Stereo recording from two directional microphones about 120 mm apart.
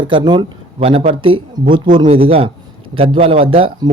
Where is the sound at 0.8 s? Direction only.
55° right (ahead or behind).